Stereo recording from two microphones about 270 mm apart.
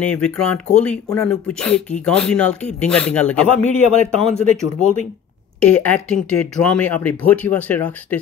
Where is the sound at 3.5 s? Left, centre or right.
Right.